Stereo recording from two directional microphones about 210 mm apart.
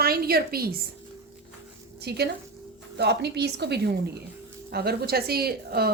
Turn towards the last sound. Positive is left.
turn(degrees=-45)  # may be behind; listen again after turning